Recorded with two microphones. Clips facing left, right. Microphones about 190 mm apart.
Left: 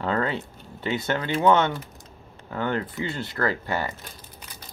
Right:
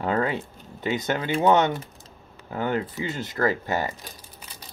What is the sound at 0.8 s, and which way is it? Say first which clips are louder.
Speech: right 1 dB; 15° right (ahead or behind).